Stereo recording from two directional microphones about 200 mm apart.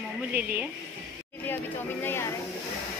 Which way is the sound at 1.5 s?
10° left (ahead or behind).